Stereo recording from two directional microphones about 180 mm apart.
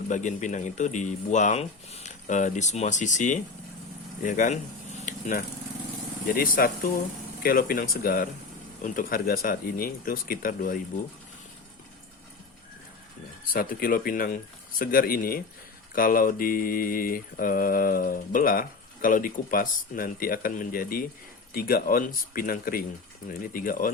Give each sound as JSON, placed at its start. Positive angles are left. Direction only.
{"t": 0.1, "sound": "speech", "side_deg": 45}
{"t": 5.0, "sound": "a sound", "side_deg": 45}
{"t": 6.2, "sound": "speech", "side_deg": 55}
{"t": 13.5, "sound": "speech", "side_deg": 55}